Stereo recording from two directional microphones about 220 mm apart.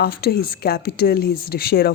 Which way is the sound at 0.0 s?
45° left (ahead or behind).